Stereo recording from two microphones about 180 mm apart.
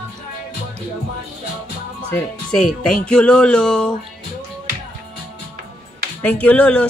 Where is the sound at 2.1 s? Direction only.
5° left (ahead or behind).